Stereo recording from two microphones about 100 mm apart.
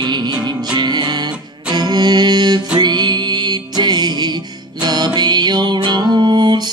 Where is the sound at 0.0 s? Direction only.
45° right (ahead or behind).